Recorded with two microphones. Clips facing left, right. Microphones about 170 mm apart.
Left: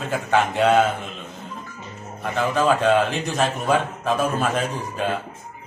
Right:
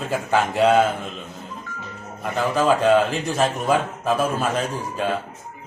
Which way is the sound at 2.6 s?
5° right (ahead or behind).